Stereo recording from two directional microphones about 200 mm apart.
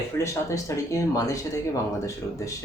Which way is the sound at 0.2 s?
15° left (ahead or behind).